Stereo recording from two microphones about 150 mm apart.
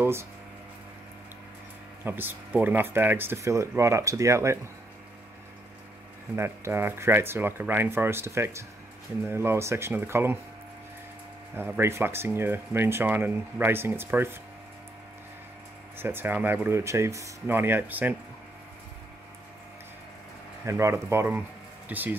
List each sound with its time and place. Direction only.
0.0 s speech: 15° right (ahead or behind)
2.0 s speech: 15° right (ahead or behind)
6.3 s speech: 15° right (ahead or behind)
11.5 s speech: 15° right (ahead or behind)
16.0 s speech: 15° right (ahead or behind)
20.6 s speech: 20° right (ahead or behind)